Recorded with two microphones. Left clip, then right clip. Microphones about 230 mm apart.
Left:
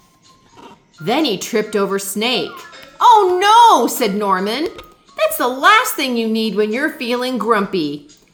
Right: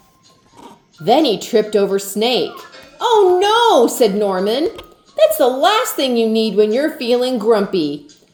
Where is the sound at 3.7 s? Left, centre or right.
Left.